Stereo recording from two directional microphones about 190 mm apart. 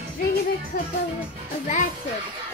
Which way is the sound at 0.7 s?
50° left (ahead or behind).